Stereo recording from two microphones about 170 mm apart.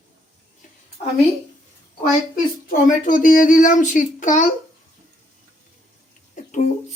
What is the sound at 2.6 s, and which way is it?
A child's voice, 55° left (ahead or behind).